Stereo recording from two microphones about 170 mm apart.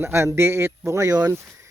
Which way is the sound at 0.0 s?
15° right (ahead or behind).